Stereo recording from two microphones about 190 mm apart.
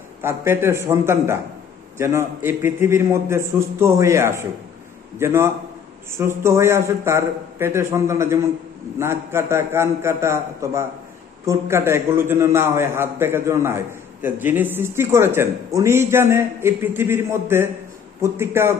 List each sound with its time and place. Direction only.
0.2 s a man's voice: 10° right (ahead or behind)